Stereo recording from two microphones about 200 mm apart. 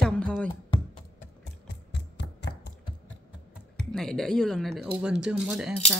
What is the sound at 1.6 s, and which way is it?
Mechanisms, 65° left (ahead or behind).